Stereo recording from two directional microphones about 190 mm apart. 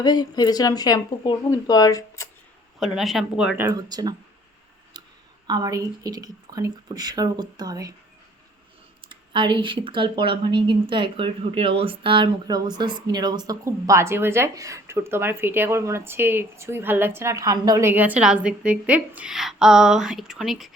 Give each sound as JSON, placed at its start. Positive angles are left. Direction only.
{"t": 0.0, "sound": "speech", "side_deg": 20}
{"t": 2.8, "sound": "speech", "side_deg": 0}
{"t": 3.7, "sound": "speech", "side_deg": -20}
{"t": 4.9, "sound": "clicking", "side_deg": -20}
{"t": 5.5, "sound": "speech", "side_deg": -20}
{"t": 9.0, "sound": "speech", "side_deg": -25}